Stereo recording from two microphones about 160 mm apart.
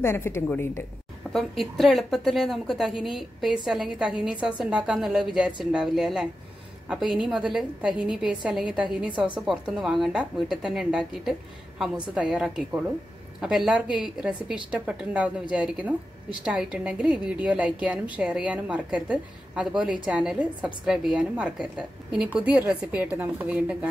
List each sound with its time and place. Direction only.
0.0 s a woman's voice: 15° left (ahead or behind)
1.3 s a woman's voice: centre (ahead or behind)